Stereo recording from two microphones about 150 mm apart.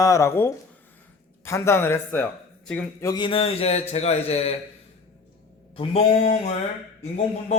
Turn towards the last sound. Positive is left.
turn(degrees=45)  # may be behind; listen again after turning